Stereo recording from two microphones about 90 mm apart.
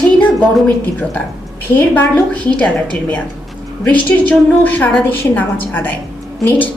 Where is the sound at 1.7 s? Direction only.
20° left (ahead or behind).